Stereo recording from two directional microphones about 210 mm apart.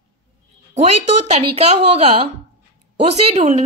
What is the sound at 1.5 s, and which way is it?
A woman's voice, 30° right (ahead or behind).